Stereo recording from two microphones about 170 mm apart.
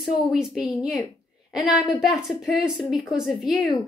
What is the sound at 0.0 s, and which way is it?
A woman's voice, centre (ahead or behind).